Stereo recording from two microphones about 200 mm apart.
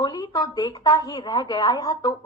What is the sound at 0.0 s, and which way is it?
A woman's voice, 20° left (ahead or behind).